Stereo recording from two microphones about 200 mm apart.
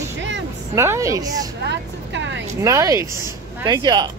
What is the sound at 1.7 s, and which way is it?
Vehicle, 65° right (ahead or behind).